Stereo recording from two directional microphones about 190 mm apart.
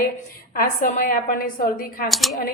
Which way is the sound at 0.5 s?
45° left (ahead or behind).